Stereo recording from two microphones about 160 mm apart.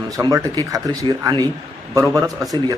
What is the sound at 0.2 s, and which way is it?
Speech, 20° right (ahead or behind).